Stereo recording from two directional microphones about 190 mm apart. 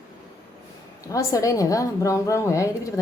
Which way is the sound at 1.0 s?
20° left (ahead or behind).